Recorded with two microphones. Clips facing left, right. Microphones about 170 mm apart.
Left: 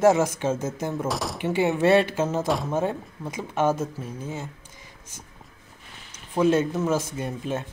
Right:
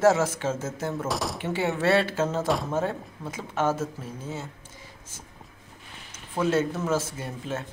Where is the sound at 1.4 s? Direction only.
15° left (ahead or behind).